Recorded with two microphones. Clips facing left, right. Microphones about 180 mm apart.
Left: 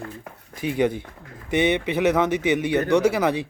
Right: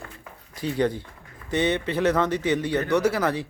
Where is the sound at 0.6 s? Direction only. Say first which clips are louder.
Left 2 dB; 15° left (ahead or behind).